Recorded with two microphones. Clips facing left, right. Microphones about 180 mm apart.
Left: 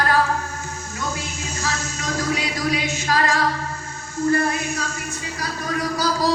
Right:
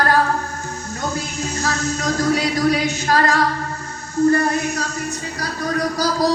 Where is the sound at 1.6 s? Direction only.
35° right (ahead or behind).